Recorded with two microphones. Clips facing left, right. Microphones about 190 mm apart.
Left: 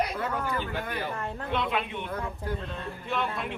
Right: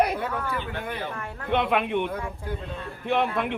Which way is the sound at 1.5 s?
60° right (ahead or behind).